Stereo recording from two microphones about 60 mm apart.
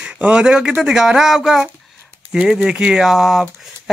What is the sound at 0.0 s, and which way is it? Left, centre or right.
Speech, centre.